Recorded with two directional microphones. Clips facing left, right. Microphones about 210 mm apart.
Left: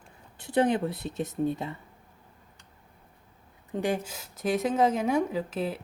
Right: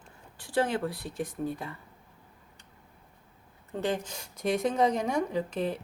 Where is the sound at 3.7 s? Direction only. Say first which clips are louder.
Left 2 dB; 10° left (ahead or behind).